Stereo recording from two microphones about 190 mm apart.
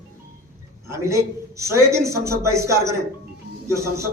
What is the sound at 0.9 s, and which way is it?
A man's voice, 15° right (ahead or behind).